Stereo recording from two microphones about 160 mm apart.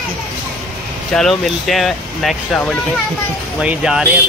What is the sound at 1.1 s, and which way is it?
Speech, centre (ahead or behind).